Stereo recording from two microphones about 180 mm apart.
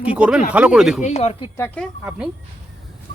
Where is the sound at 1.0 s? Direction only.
40° left (ahead or behind).